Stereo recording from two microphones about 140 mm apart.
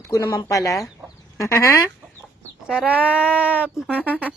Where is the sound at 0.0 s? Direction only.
25° left (ahead or behind).